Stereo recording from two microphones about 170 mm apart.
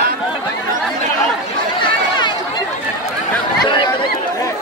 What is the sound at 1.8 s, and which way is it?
Chatter, 25° left (ahead or behind).